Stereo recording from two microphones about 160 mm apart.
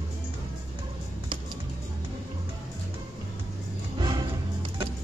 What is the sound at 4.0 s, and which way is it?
Music, 30° right (ahead or behind).